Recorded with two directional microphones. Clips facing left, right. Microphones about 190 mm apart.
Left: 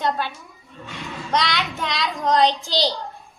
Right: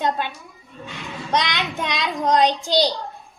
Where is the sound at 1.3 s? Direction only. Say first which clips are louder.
Even; 20° right (ahead or behind).